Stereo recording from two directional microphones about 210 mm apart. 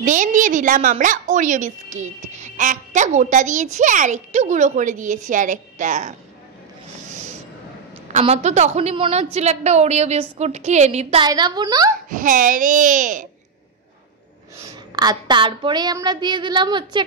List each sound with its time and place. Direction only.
0.0 s a woman's voice: 35° right (ahead or behind)
8.1 s a woman's voice: 30° right (ahead or behind)
11.2 s a woman's voice: 20° right (ahead or behind)
12.1 s a woman's voice: 40° right (ahead or behind)
15.0 s a woman's voice: 20° right (ahead or behind)